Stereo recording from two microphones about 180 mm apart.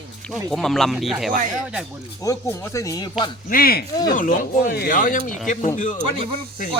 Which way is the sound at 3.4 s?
55° left (ahead or behind).